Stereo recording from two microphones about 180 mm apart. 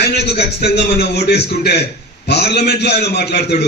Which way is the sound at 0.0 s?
65° left (ahead or behind).